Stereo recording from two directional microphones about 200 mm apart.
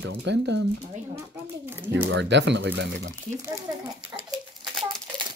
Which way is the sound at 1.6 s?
10° right (ahead or behind).